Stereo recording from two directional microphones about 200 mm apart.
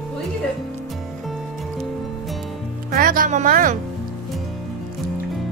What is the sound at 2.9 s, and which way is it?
Music, 45° right (ahead or behind).